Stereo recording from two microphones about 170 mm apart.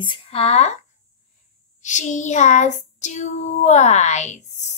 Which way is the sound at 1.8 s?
45° left (ahead or behind).